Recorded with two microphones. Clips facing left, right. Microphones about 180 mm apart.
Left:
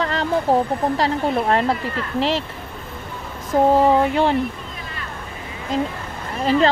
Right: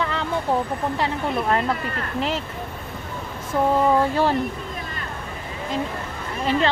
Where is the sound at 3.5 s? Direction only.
35° left (ahead or behind).